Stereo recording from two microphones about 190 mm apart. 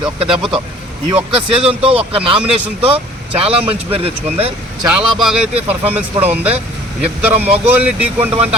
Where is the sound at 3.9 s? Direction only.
30° right (ahead or behind).